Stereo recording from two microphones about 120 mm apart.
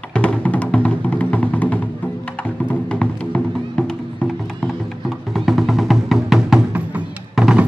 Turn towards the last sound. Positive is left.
turn(degrees=-5)  # may be behind; listen again after turning